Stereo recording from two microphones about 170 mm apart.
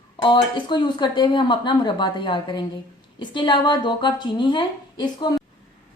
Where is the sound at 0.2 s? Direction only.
30° left (ahead or behind).